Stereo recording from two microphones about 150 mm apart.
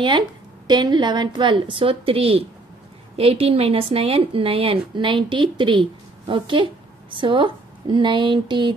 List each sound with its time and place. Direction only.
0.7 s a woman's voice: 30° right (ahead or behind)